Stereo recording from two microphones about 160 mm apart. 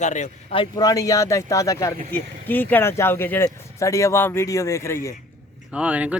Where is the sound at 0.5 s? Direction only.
25° left (ahead or behind).